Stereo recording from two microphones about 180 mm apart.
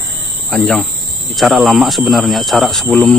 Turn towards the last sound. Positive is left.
turn(degrees=0)  # may be behind; listen again after turning